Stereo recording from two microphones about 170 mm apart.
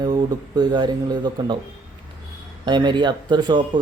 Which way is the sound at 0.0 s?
25° right (ahead or behind).